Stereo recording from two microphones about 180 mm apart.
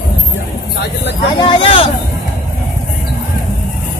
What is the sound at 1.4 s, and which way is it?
Speech, 30° left (ahead or behind).